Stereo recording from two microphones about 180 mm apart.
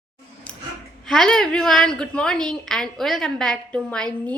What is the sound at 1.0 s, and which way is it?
A woman's voice, 5° left (ahead or behind).